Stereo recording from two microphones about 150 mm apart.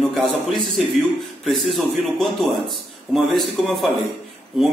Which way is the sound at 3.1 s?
Centre (ahead or behind).